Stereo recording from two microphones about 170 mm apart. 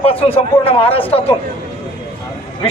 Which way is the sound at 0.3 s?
35° left (ahead or behind).